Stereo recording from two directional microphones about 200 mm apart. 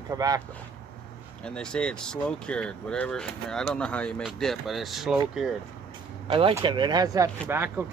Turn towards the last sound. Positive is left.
turn(degrees=-10)  # may be behind; listen again after turning